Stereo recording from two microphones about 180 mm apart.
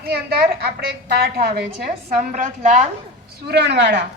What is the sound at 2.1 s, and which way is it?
Speech, 45° right (ahead or behind).